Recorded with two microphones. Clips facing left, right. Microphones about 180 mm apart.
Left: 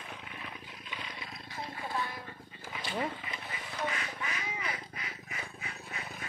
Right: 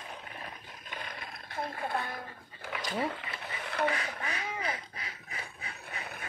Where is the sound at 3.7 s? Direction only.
60° right (ahead or behind).